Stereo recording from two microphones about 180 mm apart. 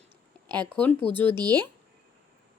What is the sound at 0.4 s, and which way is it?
Speech, 25° right (ahead or behind).